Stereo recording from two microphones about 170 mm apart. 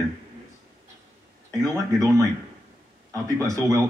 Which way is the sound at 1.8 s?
20° right (ahead or behind).